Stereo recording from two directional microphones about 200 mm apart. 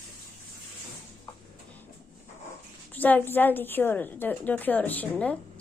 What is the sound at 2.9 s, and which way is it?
A woman's voice, 10° left (ahead or behind).